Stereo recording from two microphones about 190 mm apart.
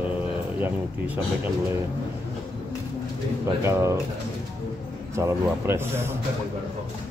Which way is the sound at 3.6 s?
15° right (ahead or behind).